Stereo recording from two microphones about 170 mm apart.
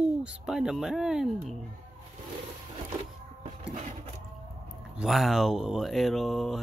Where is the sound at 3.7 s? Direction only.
45° right (ahead or behind).